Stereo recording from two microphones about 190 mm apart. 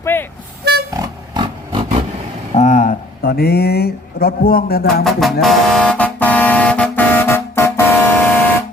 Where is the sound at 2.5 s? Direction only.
40° left (ahead or behind).